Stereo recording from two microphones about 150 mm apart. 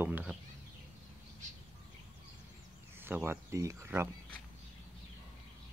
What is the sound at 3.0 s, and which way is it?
Speech, 15° right (ahead or behind).